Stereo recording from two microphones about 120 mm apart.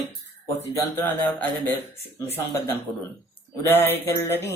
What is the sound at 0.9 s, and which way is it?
Speech, 15° left (ahead or behind).